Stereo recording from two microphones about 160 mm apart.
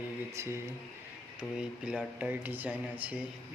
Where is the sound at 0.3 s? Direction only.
15° right (ahead or behind).